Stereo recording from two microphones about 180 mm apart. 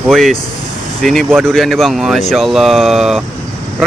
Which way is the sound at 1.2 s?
10° right (ahead or behind).